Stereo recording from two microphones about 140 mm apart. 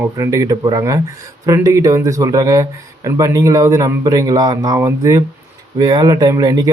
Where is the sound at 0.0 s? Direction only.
20° right (ahead or behind).